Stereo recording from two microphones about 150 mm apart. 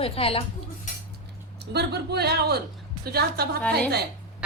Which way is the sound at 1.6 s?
90° right.